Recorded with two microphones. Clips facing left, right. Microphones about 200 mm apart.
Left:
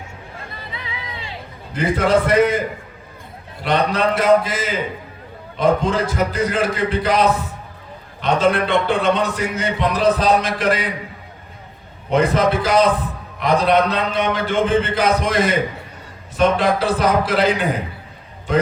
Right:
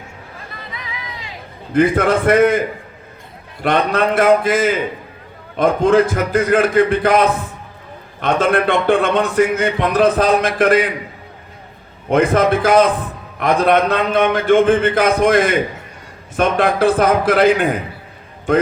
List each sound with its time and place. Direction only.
0.7 s a sound: 30° left (ahead or behind)
1.7 s a man's voice: 50° right (ahead or behind)
3.6 s a man's voice: 50° right (ahead or behind)
12.1 s a man's voice: 50° right (ahead or behind)